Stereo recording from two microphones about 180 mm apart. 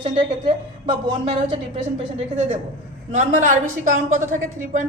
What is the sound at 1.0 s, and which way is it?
Speech, 25° right (ahead or behind).